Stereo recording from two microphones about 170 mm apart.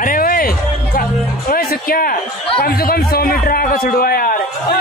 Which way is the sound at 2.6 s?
65° left (ahead or behind).